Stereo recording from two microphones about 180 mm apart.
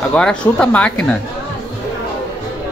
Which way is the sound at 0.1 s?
5° left (ahead or behind).